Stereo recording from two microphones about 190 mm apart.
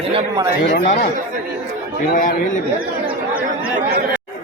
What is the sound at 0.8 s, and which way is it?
Speech, 50° left (ahead or behind).